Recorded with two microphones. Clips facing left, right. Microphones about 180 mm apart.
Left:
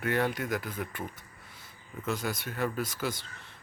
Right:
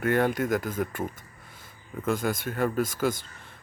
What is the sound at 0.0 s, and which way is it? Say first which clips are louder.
Speech: right 5 dB; 50° right (ahead or behind).